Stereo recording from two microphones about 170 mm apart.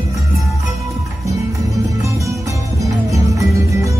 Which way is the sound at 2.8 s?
20° right (ahead or behind).